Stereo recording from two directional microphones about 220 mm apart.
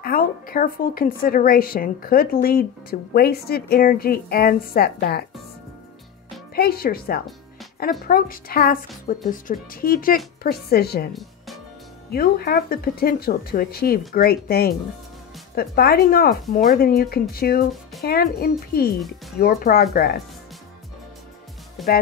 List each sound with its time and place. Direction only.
0.0 s a woman's voice: 40° left (ahead or behind)
6.5 s a woman's voice: 45° left (ahead or behind)
12.1 s speech: 45° left (ahead or behind)
21.8 s speech: centre (ahead or behind)